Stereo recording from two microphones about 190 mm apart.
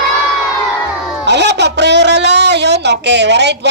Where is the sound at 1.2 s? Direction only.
65° right (ahead or behind).